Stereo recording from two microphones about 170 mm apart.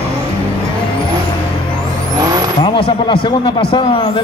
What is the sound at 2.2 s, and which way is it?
Vehicle, 20° right (ahead or behind).